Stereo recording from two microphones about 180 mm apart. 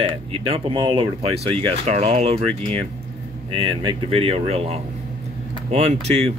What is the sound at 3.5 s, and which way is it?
Speech, 30° right (ahead or behind).